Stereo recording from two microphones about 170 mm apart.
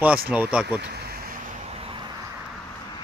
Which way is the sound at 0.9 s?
65° right (ahead or behind).